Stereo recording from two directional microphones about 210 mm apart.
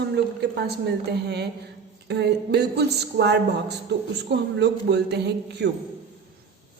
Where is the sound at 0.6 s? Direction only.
50° right (ahead or behind).